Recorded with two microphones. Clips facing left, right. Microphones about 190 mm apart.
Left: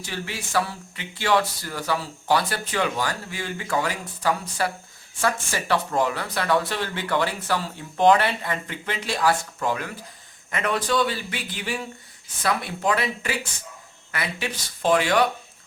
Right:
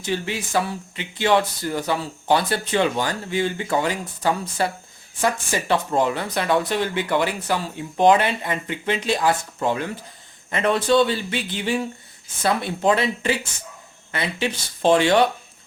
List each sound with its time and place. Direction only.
0.0 s speech: 20° right (ahead or behind)